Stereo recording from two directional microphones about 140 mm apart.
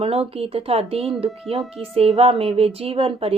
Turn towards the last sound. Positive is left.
turn(degrees=-45)  # may be behind; listen again after turning